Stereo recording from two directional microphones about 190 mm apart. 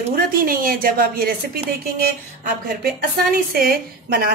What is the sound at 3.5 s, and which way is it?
Speech, 50° right (ahead or behind).